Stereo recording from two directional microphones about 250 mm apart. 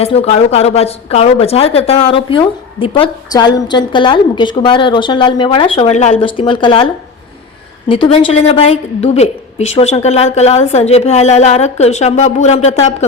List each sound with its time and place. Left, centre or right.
0.0 s a woman's voice: left